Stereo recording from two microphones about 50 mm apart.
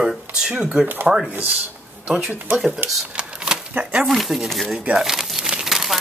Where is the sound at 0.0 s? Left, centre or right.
Centre.